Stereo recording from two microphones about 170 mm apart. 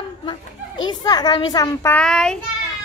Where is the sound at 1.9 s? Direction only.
5° left (ahead or behind).